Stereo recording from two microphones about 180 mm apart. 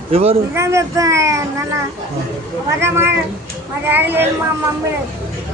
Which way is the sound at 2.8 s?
15° right (ahead or behind).